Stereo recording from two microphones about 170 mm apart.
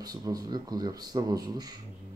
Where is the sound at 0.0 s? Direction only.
20° right (ahead or behind).